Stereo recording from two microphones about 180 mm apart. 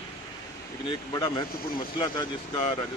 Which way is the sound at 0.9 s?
25° left (ahead or behind).